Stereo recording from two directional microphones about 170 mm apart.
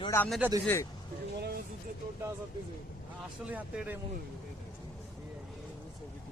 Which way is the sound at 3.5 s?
10° right (ahead or behind).